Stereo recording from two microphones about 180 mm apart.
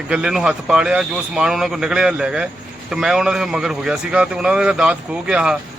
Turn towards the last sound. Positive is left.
turn(degrees=-5)  # may be behind; listen again after turning